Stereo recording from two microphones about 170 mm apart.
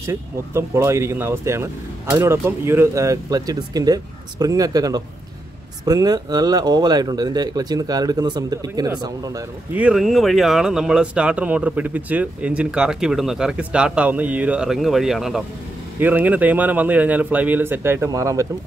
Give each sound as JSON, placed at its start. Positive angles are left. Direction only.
{"t": 0.0, "sound": "speech", "side_deg": -15}
{"t": 9.8, "sound": "speech", "side_deg": -5}